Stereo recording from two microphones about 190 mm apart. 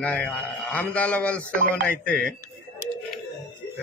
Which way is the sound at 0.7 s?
10° left (ahead or behind).